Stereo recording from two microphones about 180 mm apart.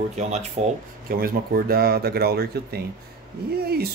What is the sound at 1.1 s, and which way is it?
Speech, 55° right (ahead or behind).